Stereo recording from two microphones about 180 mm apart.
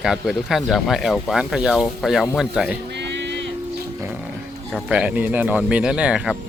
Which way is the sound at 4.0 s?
10° right (ahead or behind).